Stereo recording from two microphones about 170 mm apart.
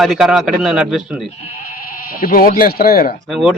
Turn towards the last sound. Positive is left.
turn(degrees=-5)  # may be behind; listen again after turning